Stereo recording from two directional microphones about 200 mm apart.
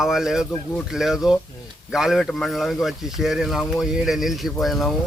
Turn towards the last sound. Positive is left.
turn(degrees=0)  # may be behind; listen again after turning